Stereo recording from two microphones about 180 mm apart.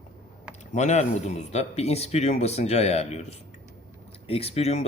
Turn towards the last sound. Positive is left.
turn(degrees=35)  # may be behind; listen again after turning